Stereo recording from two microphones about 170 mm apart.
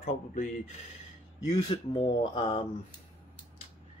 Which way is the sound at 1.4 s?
30° left (ahead or behind).